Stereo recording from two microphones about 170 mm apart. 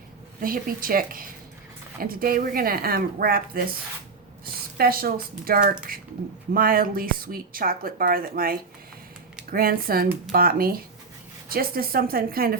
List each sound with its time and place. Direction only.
0.4 s speech: 55° right (ahead or behind)
4.8 s speech: 60° right (ahead or behind)